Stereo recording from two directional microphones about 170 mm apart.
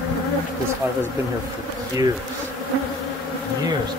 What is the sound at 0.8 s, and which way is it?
Speech, 15° right (ahead or behind).